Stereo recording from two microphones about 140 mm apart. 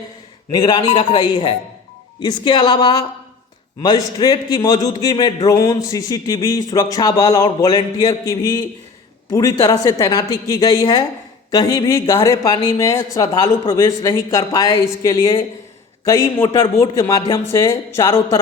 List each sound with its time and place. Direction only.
0.5 s a man's voice: 25° left (ahead or behind)